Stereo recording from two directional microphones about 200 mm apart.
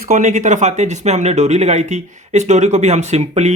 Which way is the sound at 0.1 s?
35° right (ahead or behind).